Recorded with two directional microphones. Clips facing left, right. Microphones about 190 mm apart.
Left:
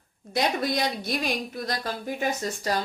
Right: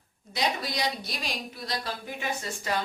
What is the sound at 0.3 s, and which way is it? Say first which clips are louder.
Speech: left 5 dB; 55° left (ahead or behind).